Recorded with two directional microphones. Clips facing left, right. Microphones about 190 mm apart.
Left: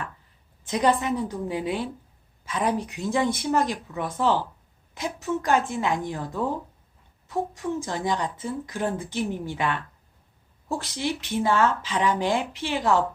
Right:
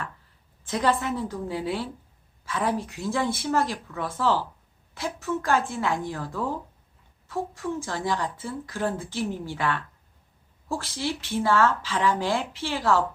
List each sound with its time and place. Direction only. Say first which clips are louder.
0.6 s a woman's voice: left 2 dB; 15° left (ahead or behind)